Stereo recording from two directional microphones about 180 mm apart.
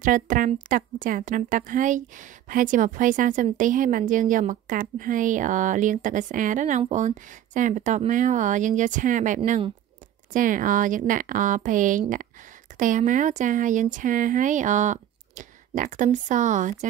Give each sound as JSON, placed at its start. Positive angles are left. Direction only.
{"t": 0.0, "sound": "a woman's voice", "side_deg": -50}